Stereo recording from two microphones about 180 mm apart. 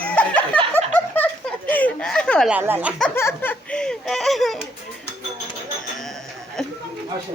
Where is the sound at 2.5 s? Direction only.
10° right (ahead or behind).